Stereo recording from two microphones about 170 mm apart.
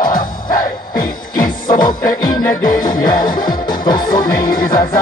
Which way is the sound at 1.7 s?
25° left (ahead or behind).